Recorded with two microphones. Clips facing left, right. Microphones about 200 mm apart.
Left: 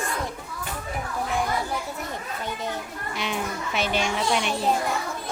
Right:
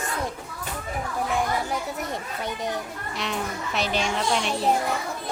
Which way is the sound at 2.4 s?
15° right (ahead or behind).